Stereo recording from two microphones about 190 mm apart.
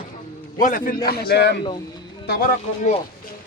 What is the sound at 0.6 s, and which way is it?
A man's voice, 45° left (ahead or behind).